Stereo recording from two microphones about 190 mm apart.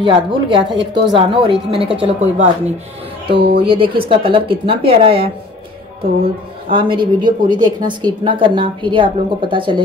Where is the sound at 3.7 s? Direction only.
30° right (ahead or behind).